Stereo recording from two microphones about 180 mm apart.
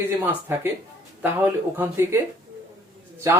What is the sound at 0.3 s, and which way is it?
Speech, 10° right (ahead or behind).